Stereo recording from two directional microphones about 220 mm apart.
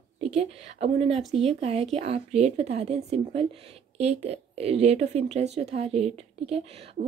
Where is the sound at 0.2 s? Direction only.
30° right (ahead or behind).